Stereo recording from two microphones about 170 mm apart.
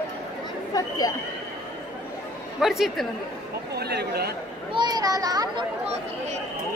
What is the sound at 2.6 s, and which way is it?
Speech, centre (ahead or behind).